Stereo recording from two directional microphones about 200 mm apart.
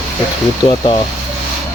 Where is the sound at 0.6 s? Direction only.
25° left (ahead or behind).